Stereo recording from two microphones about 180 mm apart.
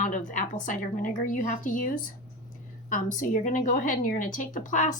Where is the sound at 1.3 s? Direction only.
40° left (ahead or behind).